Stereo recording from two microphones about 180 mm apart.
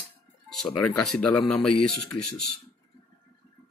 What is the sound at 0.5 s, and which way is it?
Speech, 5° left (ahead or behind).